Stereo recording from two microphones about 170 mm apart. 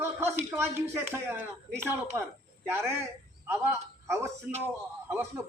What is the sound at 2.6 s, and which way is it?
A man's voice, 15° right (ahead or behind).